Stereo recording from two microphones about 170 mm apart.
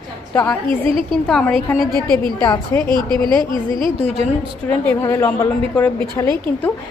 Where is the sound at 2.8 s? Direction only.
25° right (ahead or behind).